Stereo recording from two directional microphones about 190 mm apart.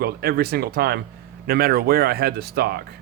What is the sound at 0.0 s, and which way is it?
Speech, 55° right (ahead or behind).